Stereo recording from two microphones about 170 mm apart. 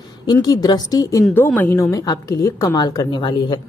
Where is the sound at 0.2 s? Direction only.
25° left (ahead or behind).